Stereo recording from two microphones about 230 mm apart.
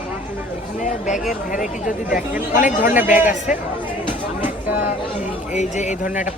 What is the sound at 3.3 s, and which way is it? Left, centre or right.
Speech, left.